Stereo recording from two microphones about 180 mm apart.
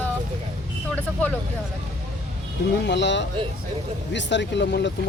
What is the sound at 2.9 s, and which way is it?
Speech, 75° left (ahead or behind).